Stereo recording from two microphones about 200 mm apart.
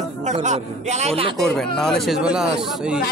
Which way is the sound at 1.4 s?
Centre (ahead or behind).